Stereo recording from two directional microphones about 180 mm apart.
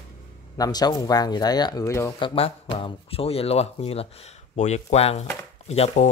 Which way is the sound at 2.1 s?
30° left (ahead or behind).